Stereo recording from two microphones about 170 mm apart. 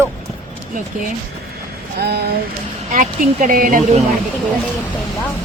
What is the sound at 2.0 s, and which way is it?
Speech, 70° right (ahead or behind).